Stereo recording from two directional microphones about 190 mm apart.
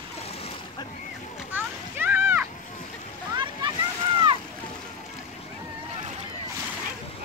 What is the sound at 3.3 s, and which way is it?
Splash, 25° right (ahead or behind).